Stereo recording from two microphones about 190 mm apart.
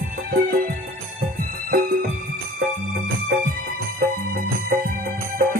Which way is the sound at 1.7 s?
50° right (ahead or behind).